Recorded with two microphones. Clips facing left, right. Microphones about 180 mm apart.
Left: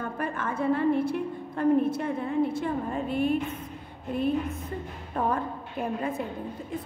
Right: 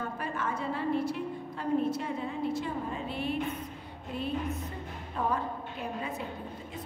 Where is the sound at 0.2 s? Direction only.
55° left (ahead or behind).